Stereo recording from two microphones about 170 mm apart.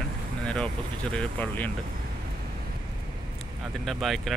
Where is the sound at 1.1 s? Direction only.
10° left (ahead or behind).